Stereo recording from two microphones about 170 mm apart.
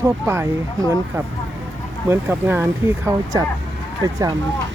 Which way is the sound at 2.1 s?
15° right (ahead or behind).